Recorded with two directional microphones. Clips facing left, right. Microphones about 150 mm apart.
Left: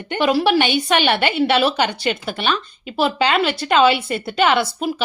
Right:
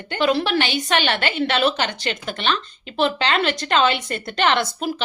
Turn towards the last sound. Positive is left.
turn(degrees=5)  # may be behind; listen again after turning